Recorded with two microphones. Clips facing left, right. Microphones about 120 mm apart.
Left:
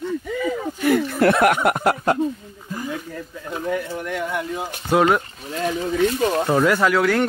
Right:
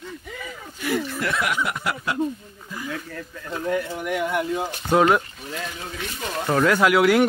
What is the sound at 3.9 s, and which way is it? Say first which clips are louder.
Speech: right 1 dB; 5° right (ahead or behind).